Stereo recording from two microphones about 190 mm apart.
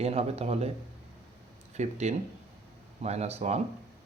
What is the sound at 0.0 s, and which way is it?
Speech, 35° right (ahead or behind).